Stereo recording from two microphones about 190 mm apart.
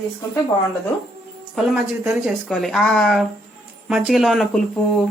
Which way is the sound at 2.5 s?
Centre (ahead or behind).